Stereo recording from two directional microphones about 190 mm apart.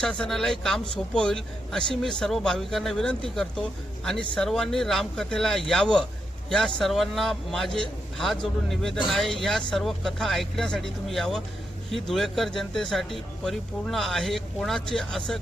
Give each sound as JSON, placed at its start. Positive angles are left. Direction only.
{"t": 0.0, "sound": "speech", "side_deg": 5}